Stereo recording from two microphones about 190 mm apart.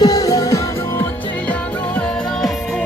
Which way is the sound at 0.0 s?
20° left (ahead or behind).